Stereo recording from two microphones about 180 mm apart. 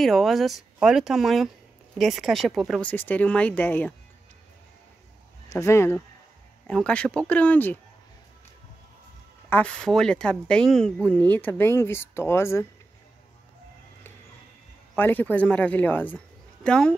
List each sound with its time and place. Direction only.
0.0 s speech: centre (ahead or behind)
5.5 s speech: 15° left (ahead or behind)
9.5 s speech: 5° left (ahead or behind)
15.0 s speech: 10° left (ahead or behind)